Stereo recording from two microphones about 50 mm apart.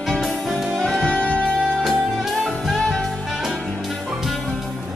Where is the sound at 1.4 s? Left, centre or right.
Centre.